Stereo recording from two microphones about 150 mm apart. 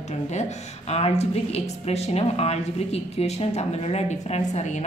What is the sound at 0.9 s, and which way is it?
A woman's voice, 45° left (ahead or behind).